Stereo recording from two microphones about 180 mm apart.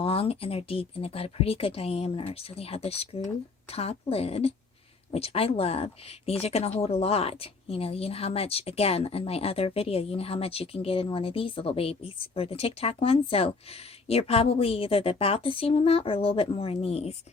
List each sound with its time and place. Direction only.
0.0 s speech: 30° left (ahead or behind)